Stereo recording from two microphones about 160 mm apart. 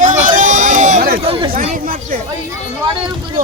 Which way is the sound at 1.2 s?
35° right (ahead or behind).